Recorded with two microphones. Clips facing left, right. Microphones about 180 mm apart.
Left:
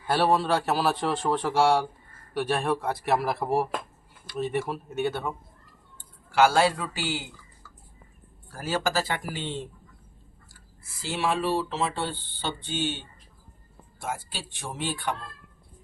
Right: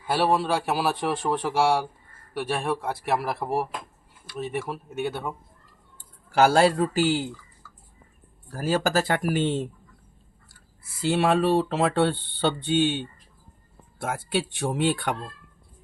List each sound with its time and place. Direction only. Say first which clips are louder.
0.1 s a man's voice: even; 5° right (ahead or behind)
6.0 s speech: right 1 dB; 40° right (ahead or behind)
8.5 s speech: right 4 dB; 45° right (ahead or behind)
9.2 s speech: right 10 dB; 55° right (ahead or behind)
11.2 s speech: right 4 dB; 55° right (ahead or behind)